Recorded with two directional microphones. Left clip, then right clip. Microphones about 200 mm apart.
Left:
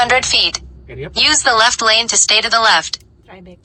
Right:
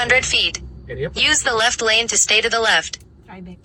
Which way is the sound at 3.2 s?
30° left (ahead or behind).